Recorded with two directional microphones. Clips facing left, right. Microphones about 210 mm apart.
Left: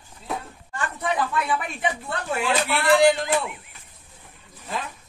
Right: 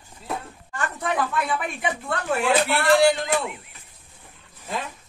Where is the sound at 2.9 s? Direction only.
Centre (ahead or behind).